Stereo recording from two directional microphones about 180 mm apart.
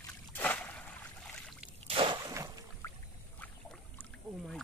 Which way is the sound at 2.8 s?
15° left (ahead or behind).